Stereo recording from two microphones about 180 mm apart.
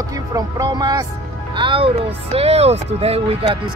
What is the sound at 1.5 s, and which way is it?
Speech, 30° right (ahead or behind).